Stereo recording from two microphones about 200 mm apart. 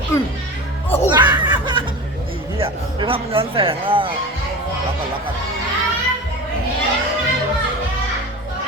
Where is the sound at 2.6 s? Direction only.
25° right (ahead or behind).